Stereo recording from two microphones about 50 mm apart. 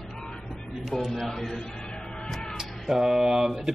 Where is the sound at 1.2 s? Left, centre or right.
Centre.